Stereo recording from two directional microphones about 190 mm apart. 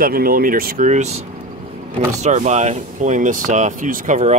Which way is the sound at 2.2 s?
40° right (ahead or behind).